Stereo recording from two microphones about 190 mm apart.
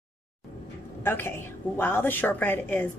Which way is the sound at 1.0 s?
10° left (ahead or behind).